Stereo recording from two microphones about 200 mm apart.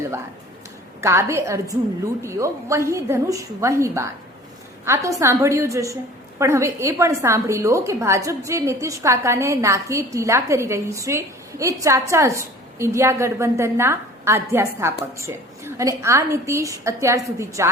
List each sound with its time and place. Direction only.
1.0 s a woman's voice: 15° right (ahead or behind)
5.2 s a woman's voice: 15° right (ahead or behind)